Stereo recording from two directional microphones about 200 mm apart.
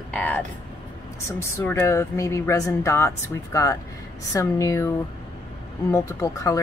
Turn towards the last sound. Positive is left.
turn(degrees=15)  # may be behind; listen again after turning